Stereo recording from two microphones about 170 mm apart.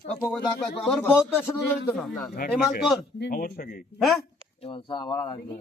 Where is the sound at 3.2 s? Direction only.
60° left (ahead or behind).